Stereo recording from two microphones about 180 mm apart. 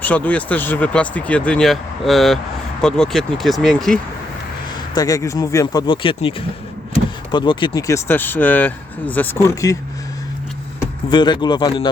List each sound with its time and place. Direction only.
0.0 s speech: 10° left (ahead or behind)
4.9 s speech: 20° left (ahead or behind)
11.1 s speech: 25° left (ahead or behind)